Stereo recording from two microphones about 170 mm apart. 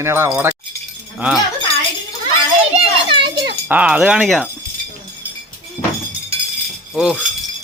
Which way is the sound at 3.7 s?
5° right (ahead or behind).